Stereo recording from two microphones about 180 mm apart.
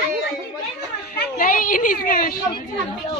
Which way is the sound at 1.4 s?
50° left (ahead or behind).